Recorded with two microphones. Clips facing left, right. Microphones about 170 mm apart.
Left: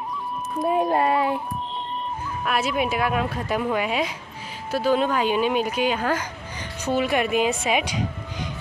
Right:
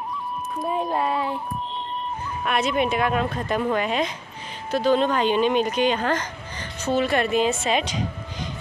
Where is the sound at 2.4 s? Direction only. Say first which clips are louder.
Right 1 dB; 5° left (ahead or behind).